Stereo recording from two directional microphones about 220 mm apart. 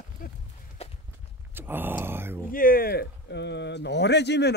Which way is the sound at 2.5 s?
40° left (ahead or behind).